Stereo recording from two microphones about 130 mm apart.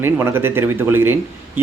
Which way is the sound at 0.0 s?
20° right (ahead or behind).